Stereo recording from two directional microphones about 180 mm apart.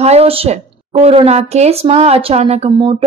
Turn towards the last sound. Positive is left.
turn(degrees=-30)  # may be behind; listen again after turning